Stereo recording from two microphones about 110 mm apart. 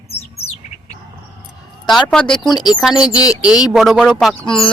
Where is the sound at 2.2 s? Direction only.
45° left (ahead or behind).